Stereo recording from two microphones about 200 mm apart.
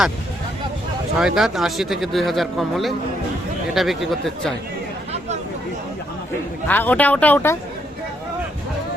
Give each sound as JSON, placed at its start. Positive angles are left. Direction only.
{"t": 1.2, "sound": "speech", "side_deg": 0}
{"t": 6.7, "sound": "speech", "side_deg": 10}